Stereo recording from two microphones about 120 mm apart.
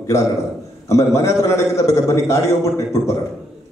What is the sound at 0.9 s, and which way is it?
A man's voice, 25° left (ahead or behind).